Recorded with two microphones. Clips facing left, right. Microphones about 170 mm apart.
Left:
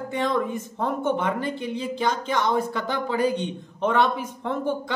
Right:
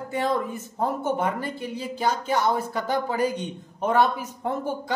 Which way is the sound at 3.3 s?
10° right (ahead or behind).